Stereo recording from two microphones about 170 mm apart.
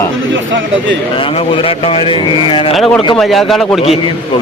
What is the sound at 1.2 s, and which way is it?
Speech, 30° left (ahead or behind).